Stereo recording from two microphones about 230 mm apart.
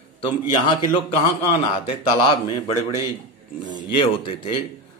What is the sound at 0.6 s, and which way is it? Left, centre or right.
Speech, centre.